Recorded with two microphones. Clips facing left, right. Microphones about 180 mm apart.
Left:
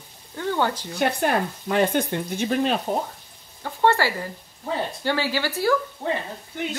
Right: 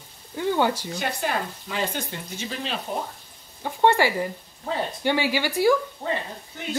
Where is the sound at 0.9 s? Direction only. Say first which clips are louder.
Left 5 dB; 55° left (ahead or behind).